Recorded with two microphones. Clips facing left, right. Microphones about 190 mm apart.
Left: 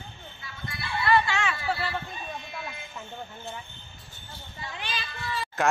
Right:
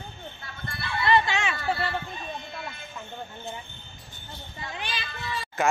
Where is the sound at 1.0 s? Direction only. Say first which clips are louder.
Right 1 dB; 20° right (ahead or behind).